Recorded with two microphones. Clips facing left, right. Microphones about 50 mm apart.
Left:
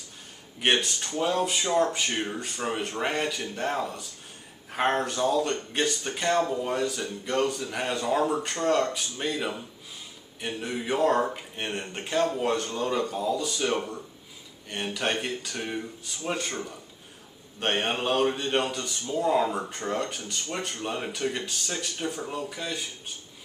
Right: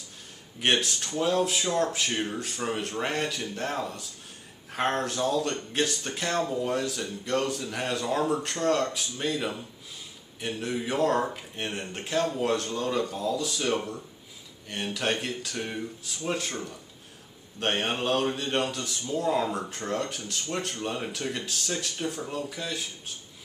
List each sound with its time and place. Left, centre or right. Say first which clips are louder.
0.6 s a man's voice: left 1 dB; centre